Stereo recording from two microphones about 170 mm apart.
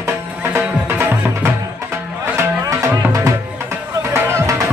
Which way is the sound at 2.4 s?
20° right (ahead or behind).